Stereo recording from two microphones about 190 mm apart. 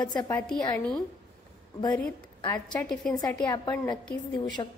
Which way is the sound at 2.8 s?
5° left (ahead or behind).